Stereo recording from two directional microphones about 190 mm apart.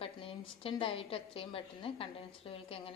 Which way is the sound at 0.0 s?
30° left (ahead or behind).